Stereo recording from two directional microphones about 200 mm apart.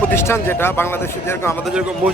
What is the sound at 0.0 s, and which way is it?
Speech, 10° left (ahead or behind).